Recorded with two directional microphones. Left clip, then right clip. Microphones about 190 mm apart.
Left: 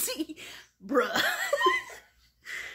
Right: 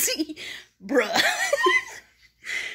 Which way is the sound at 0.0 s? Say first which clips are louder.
Right 7 dB; 5° right (ahead or behind).